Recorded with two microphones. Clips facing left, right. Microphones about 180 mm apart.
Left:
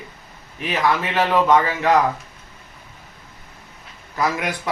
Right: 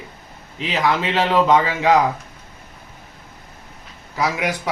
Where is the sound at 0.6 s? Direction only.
20° right (ahead or behind).